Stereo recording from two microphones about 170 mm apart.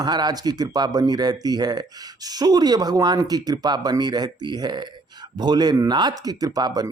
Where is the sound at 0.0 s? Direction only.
25° right (ahead or behind).